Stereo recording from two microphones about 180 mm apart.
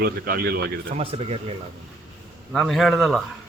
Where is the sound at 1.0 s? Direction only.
35° right (ahead or behind).